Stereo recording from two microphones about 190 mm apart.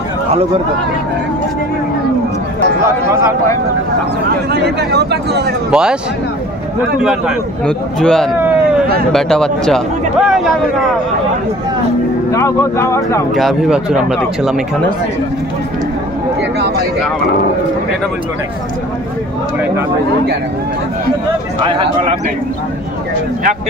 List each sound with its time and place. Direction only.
4.5 s speech: 60° right (ahead or behind)
5.7 s a man's voice: 5° right (ahead or behind)
7.0 s a man's voice: 5° right (ahead or behind)
12.3 s speech: 15° left (ahead or behind)
13.3 s a man's voice: centre (ahead or behind)
21.6 s speech: 30° right (ahead or behind)